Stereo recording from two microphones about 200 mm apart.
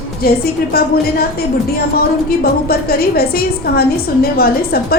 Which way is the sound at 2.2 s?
50° left (ahead or behind).